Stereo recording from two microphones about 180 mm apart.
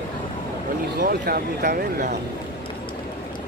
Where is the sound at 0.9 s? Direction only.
55° right (ahead or behind).